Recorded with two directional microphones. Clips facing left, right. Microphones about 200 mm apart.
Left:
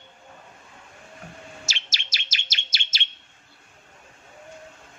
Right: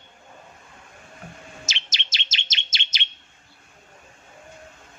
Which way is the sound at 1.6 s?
20° right (ahead or behind).